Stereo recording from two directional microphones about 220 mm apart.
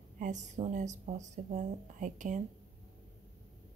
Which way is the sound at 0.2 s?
35° right (ahead or behind).